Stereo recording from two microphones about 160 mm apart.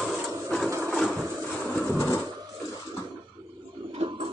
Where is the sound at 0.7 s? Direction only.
15° right (ahead or behind).